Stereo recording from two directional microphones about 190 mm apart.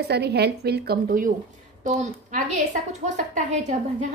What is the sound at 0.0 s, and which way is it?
A woman's voice, 60° right (ahead or behind).